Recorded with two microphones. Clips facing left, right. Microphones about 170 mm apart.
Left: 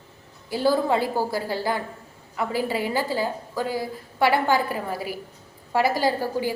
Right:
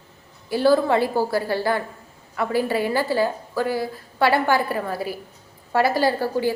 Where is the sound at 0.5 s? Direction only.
20° left (ahead or behind).